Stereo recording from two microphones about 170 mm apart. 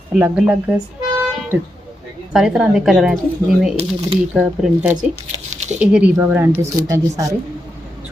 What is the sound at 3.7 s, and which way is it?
Speech, 35° right (ahead or behind).